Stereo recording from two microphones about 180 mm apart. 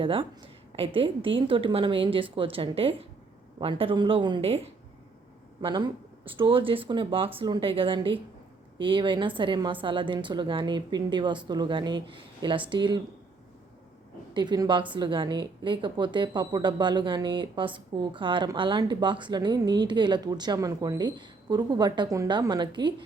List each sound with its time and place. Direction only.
0.0 s a woman's voice: 30° right (ahead or behind)
14.3 s a woman's voice: 25° right (ahead or behind)